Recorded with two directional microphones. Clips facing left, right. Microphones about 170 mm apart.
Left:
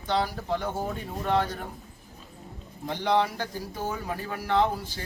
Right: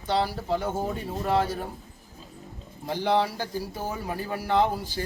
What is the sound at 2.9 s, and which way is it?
Speech, 5° right (ahead or behind).